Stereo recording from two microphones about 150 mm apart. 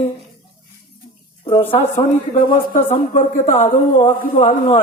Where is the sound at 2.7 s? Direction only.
55° left (ahead or behind).